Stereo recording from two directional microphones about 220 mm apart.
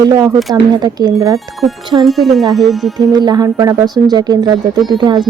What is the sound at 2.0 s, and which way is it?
Speech, centre (ahead or behind).